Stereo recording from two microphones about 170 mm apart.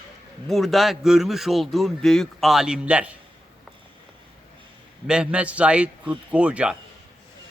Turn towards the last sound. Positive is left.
turn(degrees=-5)  # may be behind; listen again after turning